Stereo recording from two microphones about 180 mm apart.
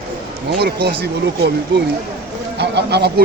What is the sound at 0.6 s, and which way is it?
Speech, 65° right (ahead or behind).